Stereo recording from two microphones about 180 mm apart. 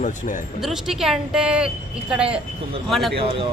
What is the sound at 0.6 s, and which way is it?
Speech, centre (ahead or behind).